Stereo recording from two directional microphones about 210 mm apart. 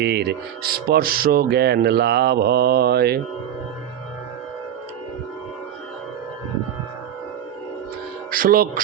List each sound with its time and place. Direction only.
0.0 s speech: 50° right (ahead or behind)
8.3 s speech: 45° right (ahead or behind)